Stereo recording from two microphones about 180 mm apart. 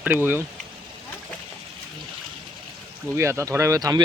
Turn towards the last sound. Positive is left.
turn(degrees=-20)  # may be behind; listen again after turning